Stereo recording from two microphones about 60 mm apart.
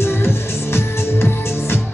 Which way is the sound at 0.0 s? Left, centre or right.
Left.